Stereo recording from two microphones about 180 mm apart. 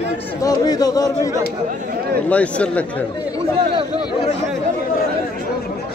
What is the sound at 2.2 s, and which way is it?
Speech, 5° left (ahead or behind).